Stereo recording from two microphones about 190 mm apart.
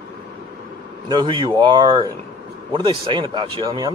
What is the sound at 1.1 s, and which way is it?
Speech, 25° right (ahead or behind).